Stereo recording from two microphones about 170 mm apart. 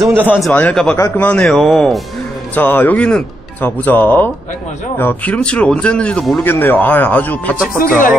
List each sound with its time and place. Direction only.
0.1 s speech: 10° right (ahead or behind)
0.5 s speech: 10° left (ahead or behind)
2.5 s speech: 10° left (ahead or behind)
7.7 s speech: 55° left (ahead or behind)